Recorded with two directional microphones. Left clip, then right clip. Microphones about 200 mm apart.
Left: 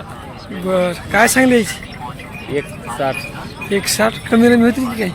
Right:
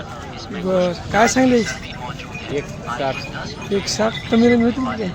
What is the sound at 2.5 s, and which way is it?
Speech, 40° left (ahead or behind).